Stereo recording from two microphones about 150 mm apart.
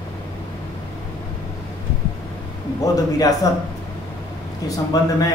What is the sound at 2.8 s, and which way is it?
Speech, 25° left (ahead or behind).